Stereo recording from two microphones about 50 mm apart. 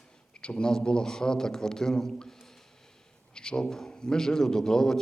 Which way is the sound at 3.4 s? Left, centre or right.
Centre.